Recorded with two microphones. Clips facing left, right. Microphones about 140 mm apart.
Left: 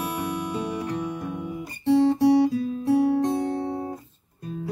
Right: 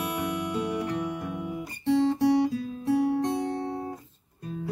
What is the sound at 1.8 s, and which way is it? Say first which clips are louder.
Guitar: left 4 dB; 5° left (ahead or behind).